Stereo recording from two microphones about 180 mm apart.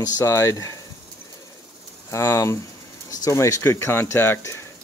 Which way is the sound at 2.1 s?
15° left (ahead or behind).